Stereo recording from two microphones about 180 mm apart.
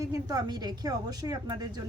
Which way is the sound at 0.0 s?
20° right (ahead or behind).